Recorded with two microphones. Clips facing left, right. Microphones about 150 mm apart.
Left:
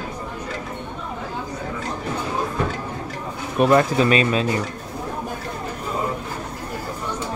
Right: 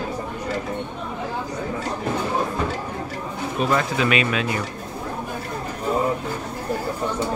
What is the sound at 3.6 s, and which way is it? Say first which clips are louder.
Speech: left 6 dB; 55° left (ahead or behind).